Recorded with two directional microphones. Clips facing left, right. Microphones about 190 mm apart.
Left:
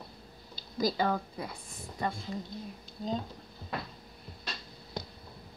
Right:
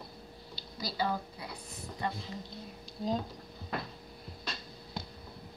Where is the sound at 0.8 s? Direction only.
50° left (ahead or behind).